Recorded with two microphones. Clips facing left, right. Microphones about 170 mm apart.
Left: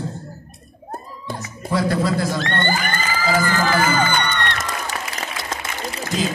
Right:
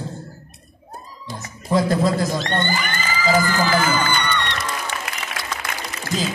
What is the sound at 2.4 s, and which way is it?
Children shouting, 50° left (ahead or behind).